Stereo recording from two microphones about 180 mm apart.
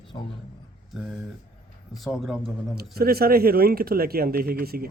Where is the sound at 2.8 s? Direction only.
60° right (ahead or behind).